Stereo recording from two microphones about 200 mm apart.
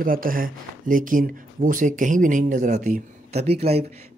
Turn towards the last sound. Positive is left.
turn(degrees=-30)  # may be behind; listen again after turning